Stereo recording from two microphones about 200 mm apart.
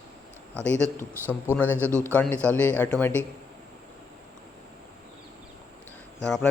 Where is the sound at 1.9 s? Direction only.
15° right (ahead or behind).